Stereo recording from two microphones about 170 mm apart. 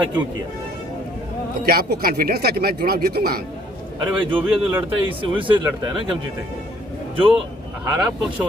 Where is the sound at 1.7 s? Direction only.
65° right (ahead or behind).